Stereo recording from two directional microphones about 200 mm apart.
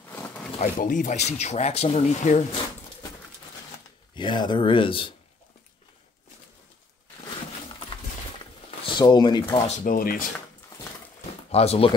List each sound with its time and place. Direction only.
0.6 s speech: 40° left (ahead or behind)
4.1 s speech: 25° left (ahead or behind)
8.9 s speech: 20° left (ahead or behind)
9.7 s speech: 45° left (ahead or behind)
11.5 s speech: 30° left (ahead or behind)